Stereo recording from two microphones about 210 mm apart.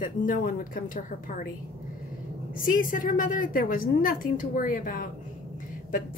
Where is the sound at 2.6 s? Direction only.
40° left (ahead or behind).